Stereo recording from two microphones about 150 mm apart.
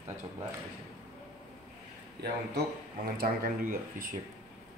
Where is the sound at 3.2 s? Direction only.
75° right (ahead or behind).